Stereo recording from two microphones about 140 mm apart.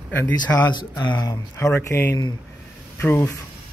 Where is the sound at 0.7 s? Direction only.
30° left (ahead or behind).